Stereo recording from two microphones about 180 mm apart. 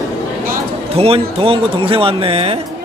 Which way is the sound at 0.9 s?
35° right (ahead or behind).